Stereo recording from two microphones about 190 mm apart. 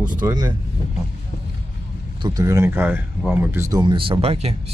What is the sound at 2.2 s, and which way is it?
Speech, 20° right (ahead or behind).